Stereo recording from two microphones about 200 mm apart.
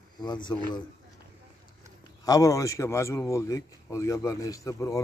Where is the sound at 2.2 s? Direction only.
15° left (ahead or behind).